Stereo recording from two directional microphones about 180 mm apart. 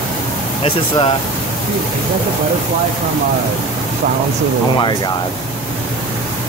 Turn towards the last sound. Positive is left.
turn(degrees=25)  # may be behind; listen again after turning